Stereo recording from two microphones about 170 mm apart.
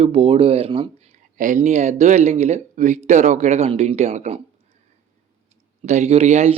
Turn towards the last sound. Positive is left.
turn(degrees=-40)  # may be behind; listen again after turning